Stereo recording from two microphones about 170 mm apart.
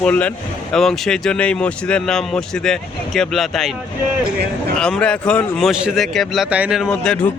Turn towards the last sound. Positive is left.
turn(degrees=5)  # may be behind; listen again after turning